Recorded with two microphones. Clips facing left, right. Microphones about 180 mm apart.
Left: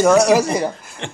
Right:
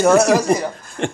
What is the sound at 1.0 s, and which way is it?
Speech, 50° right (ahead or behind).